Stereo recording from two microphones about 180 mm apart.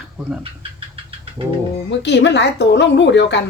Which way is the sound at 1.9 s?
75° left (ahead or behind).